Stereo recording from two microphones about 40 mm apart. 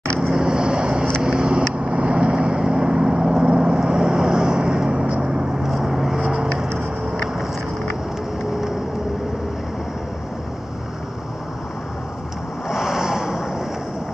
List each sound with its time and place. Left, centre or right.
0.2 s vehicle: centre
12.6 s vehicle: centre